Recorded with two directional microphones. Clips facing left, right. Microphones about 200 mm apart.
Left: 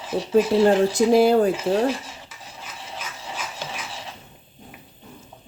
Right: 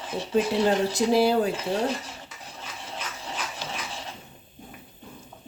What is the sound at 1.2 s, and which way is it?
Speech, 50° left (ahead or behind).